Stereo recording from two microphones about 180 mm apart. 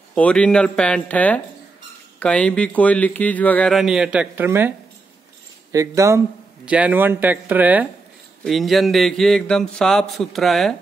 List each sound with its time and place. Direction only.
0.1 s speech: 5° left (ahead or behind)